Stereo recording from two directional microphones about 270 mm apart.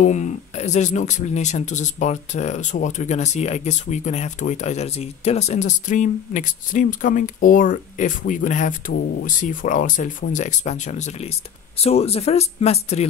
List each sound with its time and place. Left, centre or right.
0.0 s speech: left